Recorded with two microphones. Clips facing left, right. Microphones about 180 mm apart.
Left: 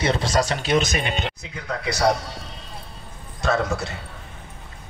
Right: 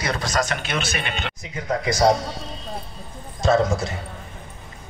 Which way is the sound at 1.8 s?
65° left (ahead or behind).